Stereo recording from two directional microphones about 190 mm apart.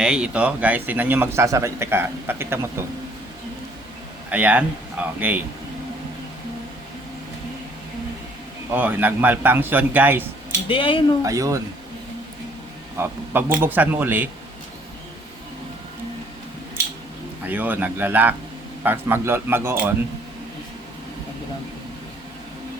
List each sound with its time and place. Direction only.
0.0 s a man's voice: 5° right (ahead or behind)
4.3 s a man's voice: 5° right (ahead or behind)
8.7 s a man's voice: 10° right (ahead or behind)
10.7 s speech: 25° left (ahead or behind)
11.2 s a man's voice: 15° right (ahead or behind)
13.0 s a man's voice: 10° right (ahead or behind)
17.4 s a man's voice: 10° right (ahead or behind)